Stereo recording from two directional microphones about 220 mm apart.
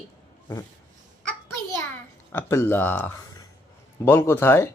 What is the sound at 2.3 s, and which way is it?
Speech, 10° left (ahead or behind).